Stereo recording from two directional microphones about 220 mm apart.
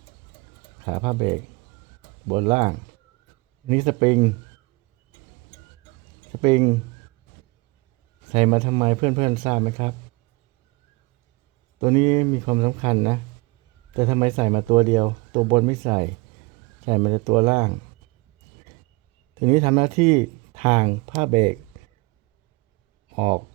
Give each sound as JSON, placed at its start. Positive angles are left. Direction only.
{"t": 0.9, "sound": "speech", "side_deg": -25}
{"t": 6.4, "sound": "speech", "side_deg": -25}
{"t": 8.3, "sound": "speech", "side_deg": -30}
{"t": 11.8, "sound": "speech", "side_deg": -30}
{"t": 19.5, "sound": "speech", "side_deg": -30}
{"t": 23.1, "sound": "speech", "side_deg": -25}